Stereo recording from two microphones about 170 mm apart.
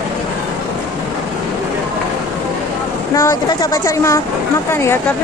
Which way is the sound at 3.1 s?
20° left (ahead or behind).